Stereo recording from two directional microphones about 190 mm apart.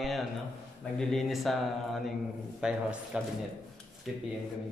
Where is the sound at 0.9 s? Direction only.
Centre (ahead or behind).